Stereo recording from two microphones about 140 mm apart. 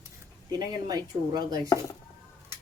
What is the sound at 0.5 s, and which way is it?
Speech, 30° right (ahead or behind).